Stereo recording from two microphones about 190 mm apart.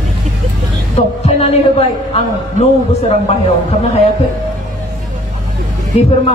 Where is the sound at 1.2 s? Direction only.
35° left (ahead or behind).